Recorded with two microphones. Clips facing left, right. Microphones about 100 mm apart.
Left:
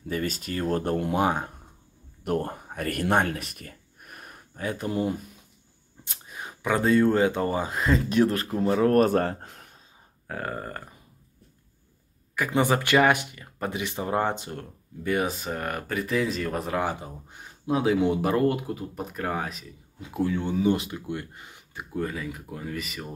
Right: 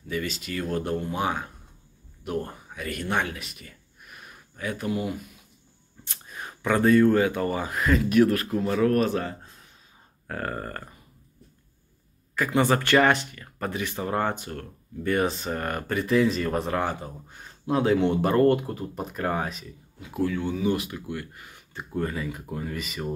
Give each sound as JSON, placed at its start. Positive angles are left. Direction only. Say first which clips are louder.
{"t": 0.1, "sound": "speech", "louder": "left 1 dB", "side_deg": 40}
{"t": 6.0, "sound": "speech", "louder": "even", "side_deg": 15}
{"t": 10.2, "sound": "speech", "louder": "right 1 dB", "side_deg": 5}
{"t": 12.4, "sound": "speech", "louder": "right 1 dB", "side_deg": 15}
{"t": 15.0, "sound": "speech", "louder": "right 2 dB", "side_deg": 5}
{"t": 20.2, "sound": "speech", "louder": "left 2 dB", "side_deg": 25}
{"t": 21.9, "sound": "speech", "louder": "right 1 dB", "side_deg": 0}